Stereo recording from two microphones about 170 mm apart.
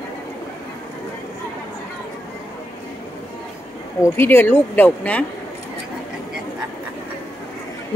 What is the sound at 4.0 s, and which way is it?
Speech, 15° left (ahead or behind).